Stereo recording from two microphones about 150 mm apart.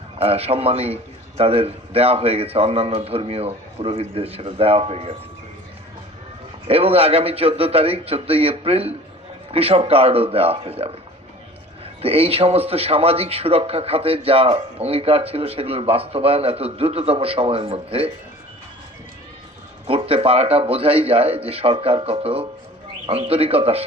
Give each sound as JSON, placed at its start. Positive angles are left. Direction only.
{"t": 0.2, "sound": "a man's voice", "side_deg": -40}
{"t": 6.7, "sound": "a man's voice", "side_deg": -40}
{"t": 12.0, "sound": "a man's voice", "side_deg": -40}
{"t": 19.9, "sound": "a man's voice", "side_deg": -40}